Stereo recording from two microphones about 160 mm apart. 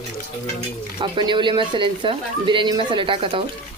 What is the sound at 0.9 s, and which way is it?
Speech, 30° right (ahead or behind).